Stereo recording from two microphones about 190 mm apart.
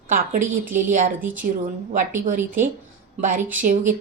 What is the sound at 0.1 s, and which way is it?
A woman's voice, 45° right (ahead or behind).